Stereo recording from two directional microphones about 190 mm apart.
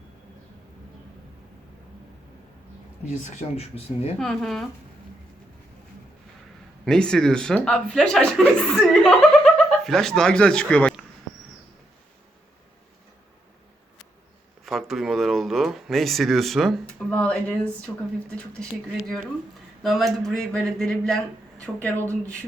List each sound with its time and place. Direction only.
3.1 s speech: 40° left (ahead or behind)
4.2 s speech: 5° left (ahead or behind)
6.8 s speech: 5° left (ahead or behind)
14.6 s speech: centre (ahead or behind)